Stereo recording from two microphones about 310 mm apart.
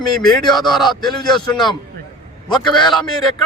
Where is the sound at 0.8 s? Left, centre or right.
Centre.